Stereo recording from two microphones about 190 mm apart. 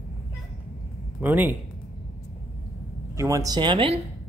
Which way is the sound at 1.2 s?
10° right (ahead or behind).